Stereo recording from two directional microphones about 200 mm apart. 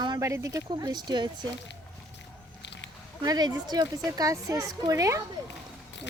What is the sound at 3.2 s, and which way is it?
A woman's voice, 20° right (ahead or behind).